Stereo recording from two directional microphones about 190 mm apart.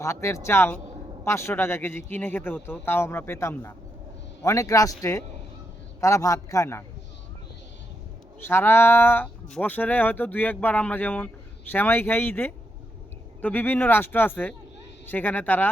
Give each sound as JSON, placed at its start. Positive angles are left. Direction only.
{"t": 0.0, "sound": "speech", "side_deg": 15}
{"t": 8.4, "sound": "speech", "side_deg": 10}